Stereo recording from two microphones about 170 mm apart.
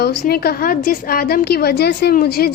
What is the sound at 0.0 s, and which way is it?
A woman's voice, 65° left (ahead or behind).